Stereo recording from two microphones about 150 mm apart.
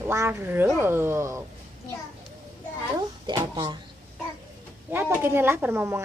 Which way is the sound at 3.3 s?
30° right (ahead or behind).